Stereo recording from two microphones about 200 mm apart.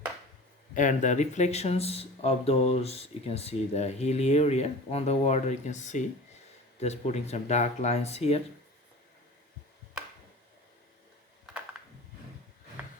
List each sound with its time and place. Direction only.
0.7 s speech: 40° left (ahead or behind)